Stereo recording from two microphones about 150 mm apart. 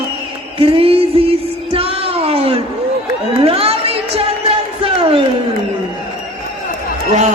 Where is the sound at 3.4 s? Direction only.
40° right (ahead or behind).